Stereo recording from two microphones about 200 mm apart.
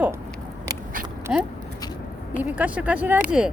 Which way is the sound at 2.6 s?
5° right (ahead or behind).